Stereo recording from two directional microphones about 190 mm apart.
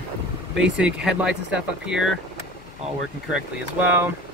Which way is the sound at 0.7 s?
5° right (ahead or behind).